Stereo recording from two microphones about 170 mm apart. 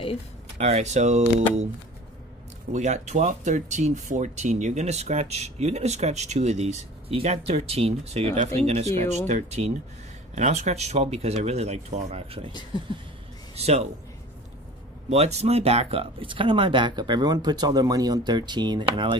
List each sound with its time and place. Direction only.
0.6 s speech: 40° right (ahead or behind)
2.7 s speech: 45° right (ahead or behind)
13.6 s speech: 40° right (ahead or behind)
15.0 s speech: 40° right (ahead or behind)